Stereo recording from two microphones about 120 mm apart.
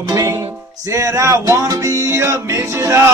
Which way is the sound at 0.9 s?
25° right (ahead or behind).